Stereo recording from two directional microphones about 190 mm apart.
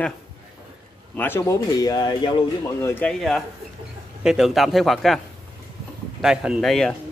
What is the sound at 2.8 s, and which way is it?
Speech, 10° left (ahead or behind).